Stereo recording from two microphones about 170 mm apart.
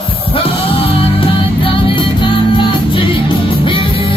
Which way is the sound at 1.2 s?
30° left (ahead or behind).